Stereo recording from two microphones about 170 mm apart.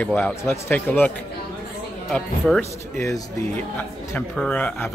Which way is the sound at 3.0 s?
20° left (ahead or behind).